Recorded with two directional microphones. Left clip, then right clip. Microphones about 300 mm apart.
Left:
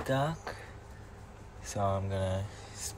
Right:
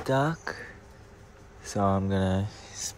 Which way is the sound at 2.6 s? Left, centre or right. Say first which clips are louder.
Right 6 dB; right.